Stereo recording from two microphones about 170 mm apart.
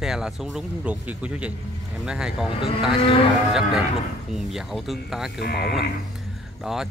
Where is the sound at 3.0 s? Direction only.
35° left (ahead or behind).